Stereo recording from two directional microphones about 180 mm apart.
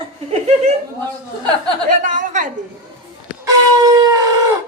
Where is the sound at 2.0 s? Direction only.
45° right (ahead or behind).